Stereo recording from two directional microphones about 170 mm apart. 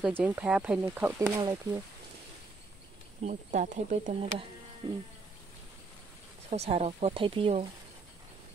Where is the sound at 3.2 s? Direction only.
50° right (ahead or behind).